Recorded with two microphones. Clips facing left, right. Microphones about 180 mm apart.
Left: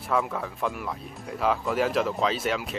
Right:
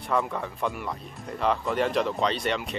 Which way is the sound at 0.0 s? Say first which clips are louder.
Even; centre (ahead or behind).